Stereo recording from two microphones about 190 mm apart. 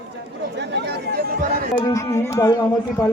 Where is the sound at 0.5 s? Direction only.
65° right (ahead or behind).